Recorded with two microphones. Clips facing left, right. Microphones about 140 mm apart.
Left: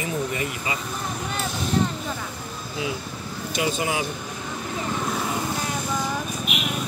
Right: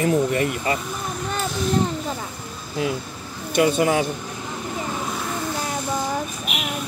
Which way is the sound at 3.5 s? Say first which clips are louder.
Right 7 dB; 55° right (ahead or behind).